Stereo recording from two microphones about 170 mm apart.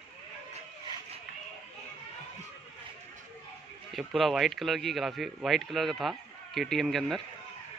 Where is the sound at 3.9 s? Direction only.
Centre (ahead or behind).